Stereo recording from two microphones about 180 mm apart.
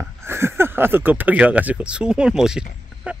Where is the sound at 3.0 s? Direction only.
5° right (ahead or behind).